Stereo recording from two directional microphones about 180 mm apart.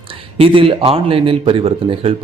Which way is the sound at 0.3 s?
30° right (ahead or behind).